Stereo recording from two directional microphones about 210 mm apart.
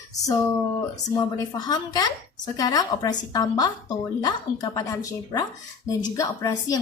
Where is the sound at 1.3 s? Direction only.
20° left (ahead or behind).